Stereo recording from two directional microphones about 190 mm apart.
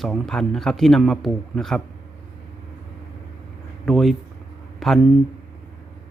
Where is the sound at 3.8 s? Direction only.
Centre (ahead or behind).